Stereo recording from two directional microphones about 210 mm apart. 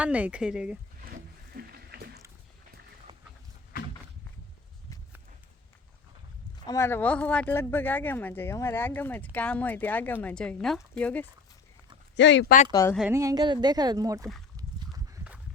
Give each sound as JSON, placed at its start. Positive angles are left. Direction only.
{"t": 0.0, "sound": "speech", "side_deg": -5}
{"t": 1.0, "sound": "boat", "side_deg": -45}
{"t": 6.7, "sound": "speech", "side_deg": 10}
{"t": 12.1, "sound": "speech", "side_deg": 60}
{"t": 12.7, "sound": "speech", "side_deg": 15}
{"t": 13.0, "sound": "speech", "side_deg": -10}
{"t": 14.5, "sound": "a sound", "side_deg": -15}